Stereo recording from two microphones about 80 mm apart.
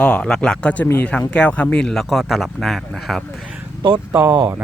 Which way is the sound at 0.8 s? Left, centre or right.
Left.